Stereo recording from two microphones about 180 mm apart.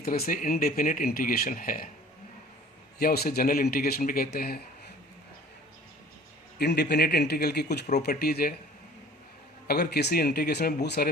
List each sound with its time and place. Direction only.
0.0 s speech: 55° left (ahead or behind)
3.0 s speech: 60° left (ahead or behind)
6.6 s speech: 65° left (ahead or behind)
9.6 s speech: 60° left (ahead or behind)